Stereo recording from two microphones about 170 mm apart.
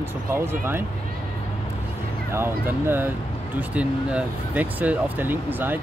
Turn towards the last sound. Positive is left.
turn(degrees=-10)  # may be behind; listen again after turning